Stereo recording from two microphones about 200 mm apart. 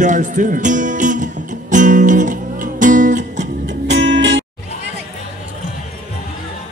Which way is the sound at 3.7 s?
65° right (ahead or behind).